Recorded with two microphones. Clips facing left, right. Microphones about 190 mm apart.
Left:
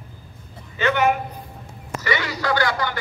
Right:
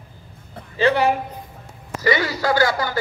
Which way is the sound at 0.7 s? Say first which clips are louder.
Right 2 dB; 35° right (ahead or behind).